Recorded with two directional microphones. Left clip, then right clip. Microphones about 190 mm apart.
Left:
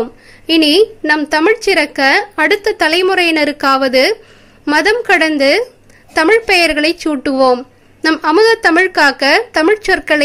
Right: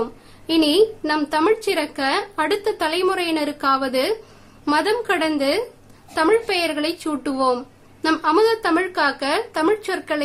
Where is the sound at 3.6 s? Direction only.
35° left (ahead or behind).